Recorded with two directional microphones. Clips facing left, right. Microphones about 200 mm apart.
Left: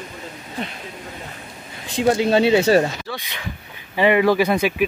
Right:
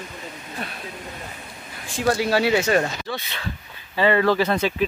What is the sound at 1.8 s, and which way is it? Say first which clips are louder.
Speech: left 4 dB; 20° left (ahead or behind).